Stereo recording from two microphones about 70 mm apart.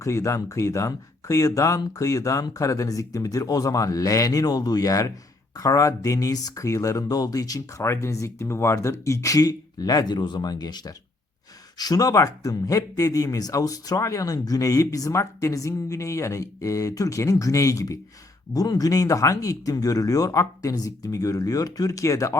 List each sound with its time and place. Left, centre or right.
0.0 s speech: left
7.8 s speech: left
11.8 s speech: left
18.5 s speech: left